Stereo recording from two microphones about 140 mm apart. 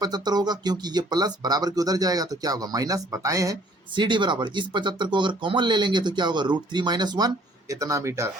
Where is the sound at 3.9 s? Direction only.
35° right (ahead or behind).